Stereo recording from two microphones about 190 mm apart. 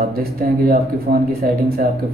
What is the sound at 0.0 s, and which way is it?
Speech, 50° right (ahead or behind).